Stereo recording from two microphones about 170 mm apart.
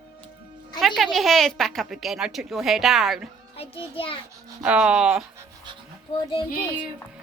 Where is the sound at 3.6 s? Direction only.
35° left (ahead or behind).